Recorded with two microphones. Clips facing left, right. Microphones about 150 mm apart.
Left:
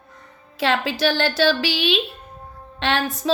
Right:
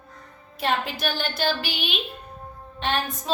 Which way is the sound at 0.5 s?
90° left.